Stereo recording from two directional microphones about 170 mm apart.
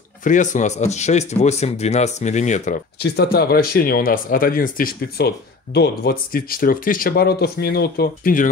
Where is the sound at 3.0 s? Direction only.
70° left (ahead or behind).